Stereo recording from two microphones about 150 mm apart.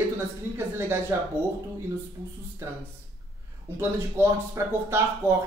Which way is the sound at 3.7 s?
15° right (ahead or behind).